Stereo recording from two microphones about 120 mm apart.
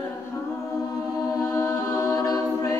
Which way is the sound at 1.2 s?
25° left (ahead or behind).